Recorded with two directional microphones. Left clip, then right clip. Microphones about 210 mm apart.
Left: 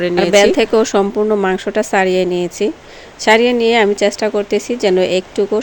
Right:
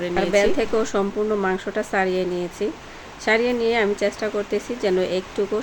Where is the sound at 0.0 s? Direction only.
45° left (ahead or behind).